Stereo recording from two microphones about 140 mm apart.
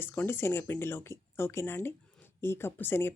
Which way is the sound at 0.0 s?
15° left (ahead or behind).